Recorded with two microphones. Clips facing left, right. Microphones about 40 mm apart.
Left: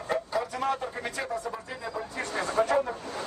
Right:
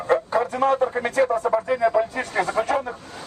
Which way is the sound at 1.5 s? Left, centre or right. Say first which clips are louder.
Right 16 dB; right.